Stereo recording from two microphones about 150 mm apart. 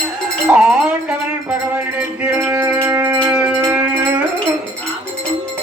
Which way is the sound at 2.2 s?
15° right (ahead or behind).